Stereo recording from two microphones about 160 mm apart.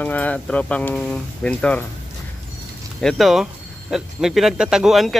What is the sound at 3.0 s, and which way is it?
Speech, centre (ahead or behind).